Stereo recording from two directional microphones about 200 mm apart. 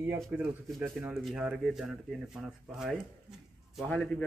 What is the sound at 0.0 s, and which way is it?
Speech, 10° right (ahead or behind).